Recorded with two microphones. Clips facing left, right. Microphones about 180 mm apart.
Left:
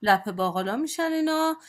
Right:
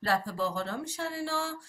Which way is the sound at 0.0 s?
80° left.